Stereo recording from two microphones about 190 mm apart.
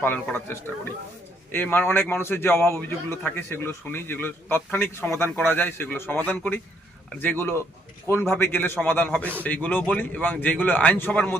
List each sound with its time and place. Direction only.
0.0 s a man's voice: 10° left (ahead or behind)